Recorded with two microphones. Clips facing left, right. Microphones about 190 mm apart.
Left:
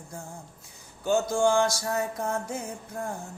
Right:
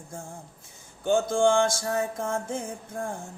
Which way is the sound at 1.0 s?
50° right (ahead or behind).